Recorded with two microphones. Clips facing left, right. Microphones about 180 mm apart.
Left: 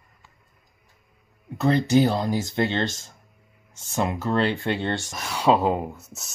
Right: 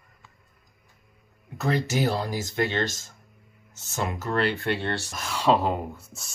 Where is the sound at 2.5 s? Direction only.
25° left (ahead or behind).